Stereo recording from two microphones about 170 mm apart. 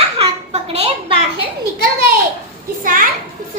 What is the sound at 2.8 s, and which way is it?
Speech, 55° right (ahead or behind).